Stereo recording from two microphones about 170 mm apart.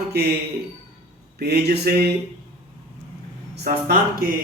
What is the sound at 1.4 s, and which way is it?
Speech, 75° right (ahead or behind).